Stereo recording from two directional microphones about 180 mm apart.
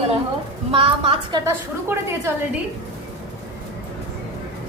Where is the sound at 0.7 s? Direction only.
30° right (ahead or behind).